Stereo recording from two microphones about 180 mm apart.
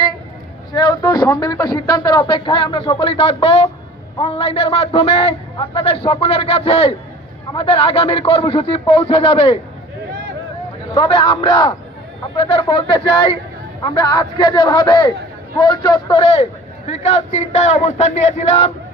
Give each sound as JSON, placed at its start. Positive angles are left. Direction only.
{"t": 0.7, "sound": "a man's voice", "side_deg": 25}
{"t": 11.1, "sound": "a man's voice", "side_deg": 25}